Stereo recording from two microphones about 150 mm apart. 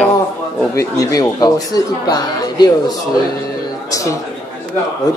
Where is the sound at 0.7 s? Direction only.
20° left (ahead or behind).